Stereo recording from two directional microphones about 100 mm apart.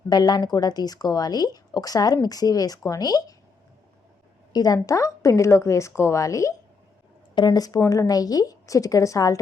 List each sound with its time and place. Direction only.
0.1 s speech: 45° left (ahead or behind)
4.5 s speech: 40° left (ahead or behind)